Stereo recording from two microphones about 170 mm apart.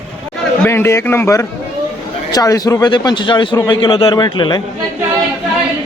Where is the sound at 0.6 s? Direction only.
15° left (ahead or behind).